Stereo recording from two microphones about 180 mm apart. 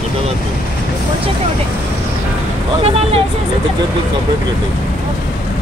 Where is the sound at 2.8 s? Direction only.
35° right (ahead or behind).